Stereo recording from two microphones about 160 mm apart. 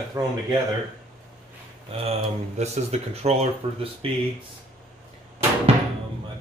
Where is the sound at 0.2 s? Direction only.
20° right (ahead or behind).